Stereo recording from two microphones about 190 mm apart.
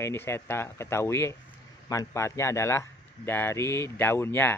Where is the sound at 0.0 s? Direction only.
15° left (ahead or behind).